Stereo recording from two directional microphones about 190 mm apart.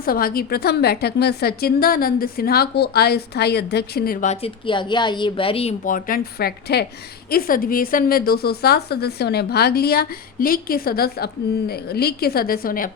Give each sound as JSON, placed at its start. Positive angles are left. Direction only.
{"t": 0.0, "sound": "a woman's voice", "side_deg": 50}
{"t": 5.8, "sound": "a woman's voice", "side_deg": 45}